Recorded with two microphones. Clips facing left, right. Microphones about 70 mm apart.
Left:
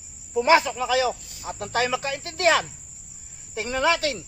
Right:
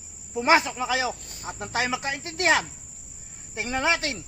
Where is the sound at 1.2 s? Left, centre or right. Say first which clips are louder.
Right 2 dB; right.